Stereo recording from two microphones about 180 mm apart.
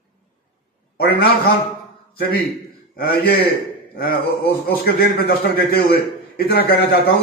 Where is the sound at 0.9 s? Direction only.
60° left (ahead or behind).